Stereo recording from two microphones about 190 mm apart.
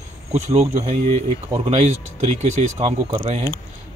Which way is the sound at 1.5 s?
35° right (ahead or behind).